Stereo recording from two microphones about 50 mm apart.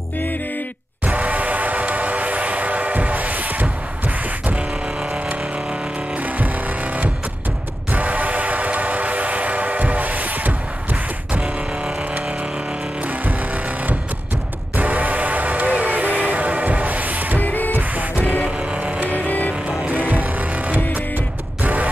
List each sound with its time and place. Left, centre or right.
1.0 s train: right
6.1 s a sound: right
7.9 s train: right
14.8 s music: right
17.4 s music: left
17.7 s music: right
18.2 s music: left
18.7 s music: right
19.0 s a sound: left
19.9 s music: right